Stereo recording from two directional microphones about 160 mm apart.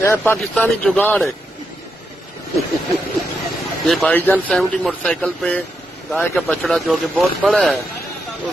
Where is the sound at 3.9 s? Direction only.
Centre (ahead or behind).